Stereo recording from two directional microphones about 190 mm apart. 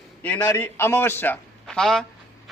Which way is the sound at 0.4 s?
15° left (ahead or behind).